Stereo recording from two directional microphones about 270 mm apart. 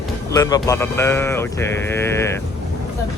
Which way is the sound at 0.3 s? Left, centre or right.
Centre.